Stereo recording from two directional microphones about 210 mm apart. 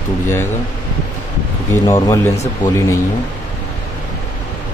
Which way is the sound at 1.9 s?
15° left (ahead or behind).